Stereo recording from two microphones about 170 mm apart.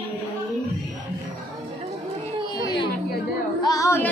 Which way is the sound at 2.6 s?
25° left (ahead or behind).